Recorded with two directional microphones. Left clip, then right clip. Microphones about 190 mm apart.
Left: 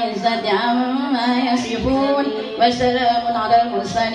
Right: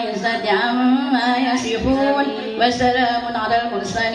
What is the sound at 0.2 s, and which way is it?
A woman's voice, 40° right (ahead or behind).